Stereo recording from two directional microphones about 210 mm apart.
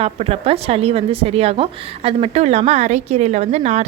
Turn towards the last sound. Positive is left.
turn(degrees=-30)  # may be behind; listen again after turning